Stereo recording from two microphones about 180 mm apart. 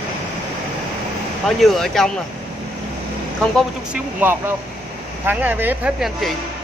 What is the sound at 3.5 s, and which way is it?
Speech, 10° right (ahead or behind).